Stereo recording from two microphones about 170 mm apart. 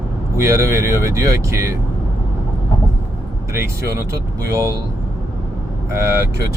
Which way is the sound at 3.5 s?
15° right (ahead or behind).